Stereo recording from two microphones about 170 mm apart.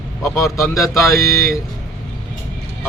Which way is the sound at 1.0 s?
15° left (ahead or behind).